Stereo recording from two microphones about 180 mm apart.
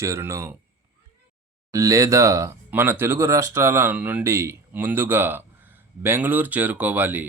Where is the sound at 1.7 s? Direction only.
20° right (ahead or behind).